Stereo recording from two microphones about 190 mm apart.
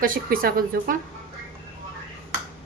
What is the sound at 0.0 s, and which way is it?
Speech, 50° right (ahead or behind).